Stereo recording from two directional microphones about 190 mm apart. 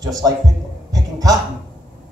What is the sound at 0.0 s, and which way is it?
Speech, 20° right (ahead or behind).